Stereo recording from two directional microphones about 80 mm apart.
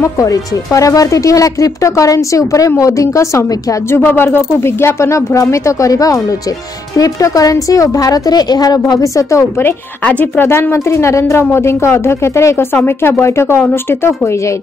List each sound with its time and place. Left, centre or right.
0.0 s speech: left
3.9 s a woman's voice: left
9.0 s a woman's voice: left
10.0 s a woman's voice: left